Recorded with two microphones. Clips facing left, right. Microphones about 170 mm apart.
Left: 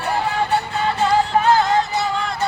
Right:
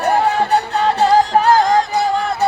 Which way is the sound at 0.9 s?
40° right (ahead or behind).